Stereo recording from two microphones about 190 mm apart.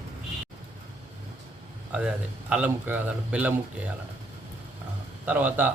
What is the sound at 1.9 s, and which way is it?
Speech, 5° right (ahead or behind).